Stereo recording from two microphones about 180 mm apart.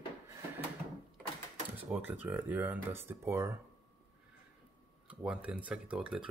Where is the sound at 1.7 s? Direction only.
10° right (ahead or behind).